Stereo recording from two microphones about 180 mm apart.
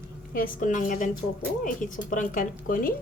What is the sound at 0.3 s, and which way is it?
Speech, 50° left (ahead or behind).